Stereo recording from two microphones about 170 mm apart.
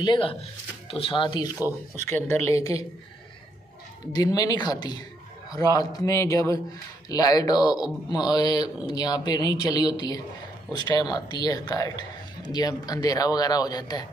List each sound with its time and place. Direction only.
0.0 s speech: 30° left (ahead or behind)
2.0 s speech: 15° left (ahead or behind)
4.1 s a man's voice: 20° left (ahead or behind)